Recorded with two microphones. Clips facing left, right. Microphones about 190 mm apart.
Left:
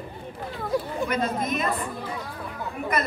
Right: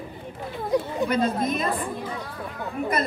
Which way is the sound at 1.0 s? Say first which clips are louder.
Right 3 dB; 30° right (ahead or behind).